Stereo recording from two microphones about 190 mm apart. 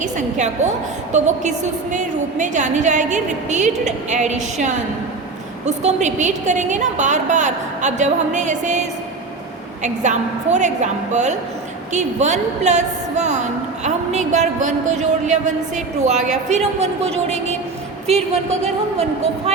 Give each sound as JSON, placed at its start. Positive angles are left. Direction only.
{"t": 0.0, "sound": "a woman's voice", "side_deg": -40}
{"t": 18.1, "sound": "a woman's voice", "side_deg": -35}
{"t": 19.5, "sound": "speech", "side_deg": -35}